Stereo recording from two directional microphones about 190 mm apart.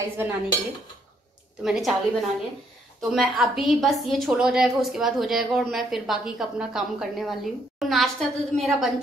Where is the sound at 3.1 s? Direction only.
Centre (ahead or behind).